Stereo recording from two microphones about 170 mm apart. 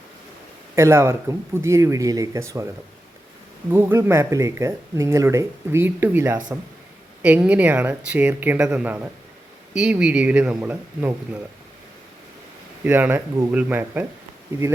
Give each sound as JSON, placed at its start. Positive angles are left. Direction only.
{"t": 0.8, "sound": "speech", "side_deg": -15}
{"t": 3.7, "sound": "speech", "side_deg": -15}
{"t": 12.8, "sound": "speech", "side_deg": -10}